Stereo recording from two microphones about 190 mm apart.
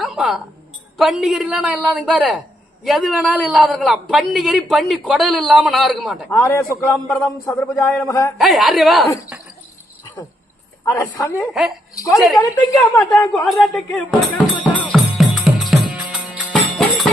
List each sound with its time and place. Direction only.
0.0 s music: centre (ahead or behind)
0.9 s a man's voice: centre (ahead or behind)
6.3 s a man's voice: 15° left (ahead or behind)
7.3 s a man's voice: centre (ahead or behind)
7.5 s a man's voice: 15° left (ahead or behind)
8.4 s a man's voice: centre (ahead or behind)
10.8 s a man's voice: 15° left (ahead or behind)
13.3 s a man's voice: centre (ahead or behind)
14.6 s music: centre (ahead or behind)